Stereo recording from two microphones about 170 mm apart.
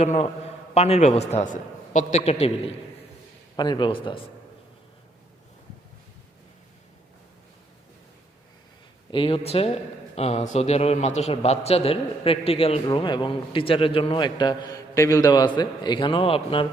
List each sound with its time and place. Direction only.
0.0 s a man's voice: 40° left (ahead or behind)
3.5 s speech: 25° left (ahead or behind)
9.1 s a man's voice: 30° left (ahead or behind)